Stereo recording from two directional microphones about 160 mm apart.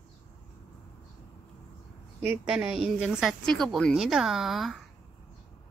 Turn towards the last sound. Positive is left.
turn(degrees=0)  # may be behind; listen again after turning